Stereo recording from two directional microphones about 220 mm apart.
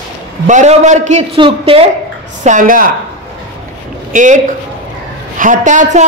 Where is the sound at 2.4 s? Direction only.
35° right (ahead or behind).